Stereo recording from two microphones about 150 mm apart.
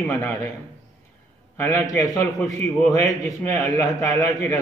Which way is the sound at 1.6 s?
15° left (ahead or behind).